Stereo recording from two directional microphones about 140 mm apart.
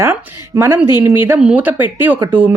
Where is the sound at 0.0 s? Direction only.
20° right (ahead or behind).